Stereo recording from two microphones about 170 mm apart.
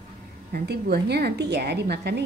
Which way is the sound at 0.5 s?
65° right (ahead or behind).